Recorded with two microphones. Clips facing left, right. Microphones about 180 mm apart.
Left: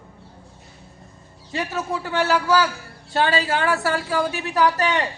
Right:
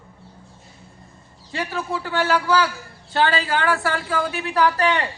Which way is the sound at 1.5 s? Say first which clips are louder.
Left 1 dB; 20° left (ahead or behind).